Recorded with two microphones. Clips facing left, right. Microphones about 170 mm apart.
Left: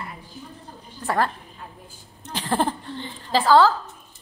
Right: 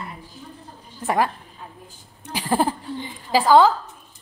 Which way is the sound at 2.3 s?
10° right (ahead or behind).